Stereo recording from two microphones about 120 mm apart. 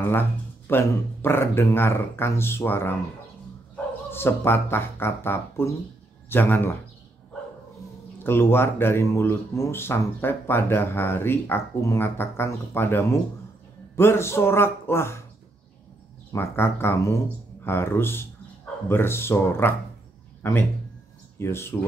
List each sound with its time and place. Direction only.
0.0 s speech: 15° left (ahead or behind)
4.1 s speech: 20° left (ahead or behind)
8.2 s speech: 20° left (ahead or behind)
16.3 s speech: 20° left (ahead or behind)